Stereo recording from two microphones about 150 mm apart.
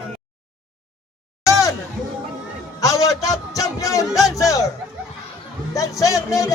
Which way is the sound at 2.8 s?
20° left (ahead or behind).